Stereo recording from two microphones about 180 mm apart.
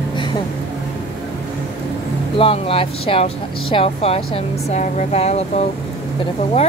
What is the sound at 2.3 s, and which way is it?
Speech, 30° left (ahead or behind).